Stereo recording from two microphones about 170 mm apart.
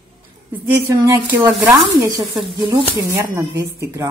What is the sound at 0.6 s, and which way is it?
Speech, 15° right (ahead or behind).